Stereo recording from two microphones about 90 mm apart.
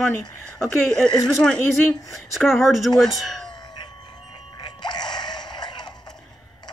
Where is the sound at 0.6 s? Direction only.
5° left (ahead or behind).